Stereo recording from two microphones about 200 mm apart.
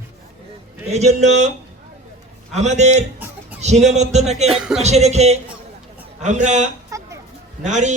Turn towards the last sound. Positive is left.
turn(degrees=-35)  # may be behind; listen again after turning